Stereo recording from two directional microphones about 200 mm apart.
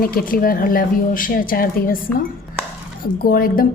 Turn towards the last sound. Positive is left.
turn(degrees=45)  # may be behind; listen again after turning